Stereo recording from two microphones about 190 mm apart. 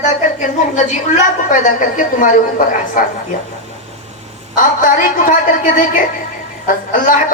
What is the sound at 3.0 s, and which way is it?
Speech, 45° left (ahead or behind).